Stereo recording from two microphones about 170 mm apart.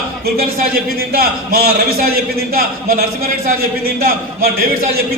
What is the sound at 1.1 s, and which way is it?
A man's voice, 60° right (ahead or behind).